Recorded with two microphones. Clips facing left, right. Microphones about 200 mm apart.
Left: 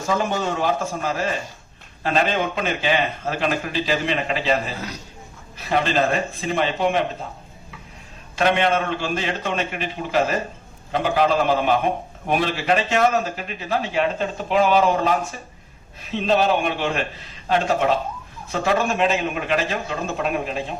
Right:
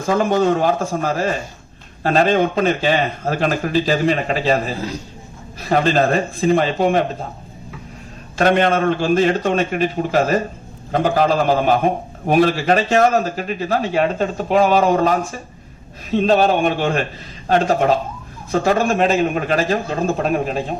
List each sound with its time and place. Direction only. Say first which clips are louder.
0.0 s a man's voice: right 6 dB; 50° right (ahead or behind)
8.4 s a man's voice: right 4 dB; 40° right (ahead or behind)